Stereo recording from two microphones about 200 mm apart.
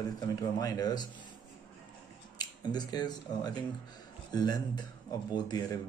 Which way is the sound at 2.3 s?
20° left (ahead or behind).